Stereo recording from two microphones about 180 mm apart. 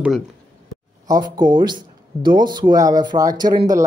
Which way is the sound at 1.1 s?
25° right (ahead or behind).